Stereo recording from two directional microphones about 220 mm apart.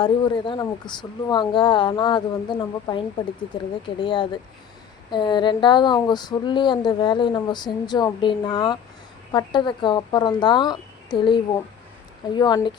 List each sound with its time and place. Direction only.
0.0 s speech: 20° left (ahead or behind)